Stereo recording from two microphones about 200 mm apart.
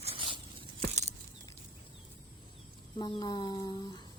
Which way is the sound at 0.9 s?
35° right (ahead or behind).